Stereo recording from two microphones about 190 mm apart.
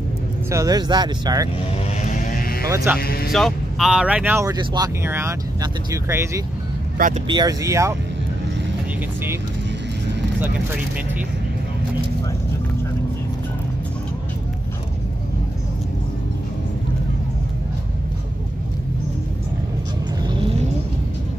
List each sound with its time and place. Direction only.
0.5 s speech: 20° right (ahead or behind)
2.0 s mantra: 45° left (ahead or behind)
2.7 s speech: 15° right (ahead or behind)
3.0 s speech: 55° left (ahead or behind)
3.3 s speech: centre (ahead or behind); by 7.9 s 15° right (ahead or behind)